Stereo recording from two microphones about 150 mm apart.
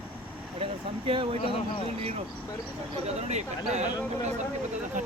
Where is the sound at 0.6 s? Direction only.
35° right (ahead or behind).